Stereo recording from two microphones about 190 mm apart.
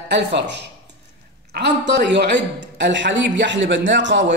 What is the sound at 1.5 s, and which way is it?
A man's voice, 60° right (ahead or behind).